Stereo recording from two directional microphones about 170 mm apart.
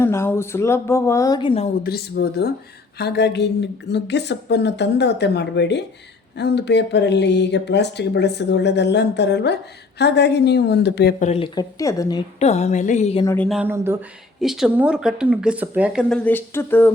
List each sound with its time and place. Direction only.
0.0 s speech: 15° left (ahead or behind); by 1.7 s 35° left (ahead or behind)
1.8 s speech: 65° left (ahead or behind)
3.0 s speech: 80° left
11.2 s a woman's voice: 40° left (ahead or behind)
11.4 s speech: 20° left (ahead or behind)
12.4 s a woman's voice: 40° left (ahead or behind)
13.2 s speech: 10° left (ahead or behind)
13.5 s speech: 10° right (ahead or behind)
14.4 s speech: 5° right (ahead or behind)